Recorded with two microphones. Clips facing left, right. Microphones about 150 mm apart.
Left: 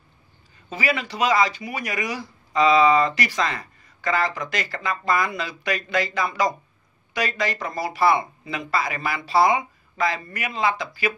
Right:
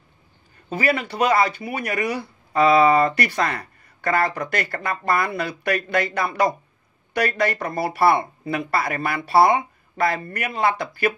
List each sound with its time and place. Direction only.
0.7 s speech: 55° right (ahead or behind)